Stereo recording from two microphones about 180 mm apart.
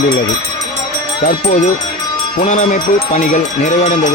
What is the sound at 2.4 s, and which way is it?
Speech, 45° left (ahead or behind).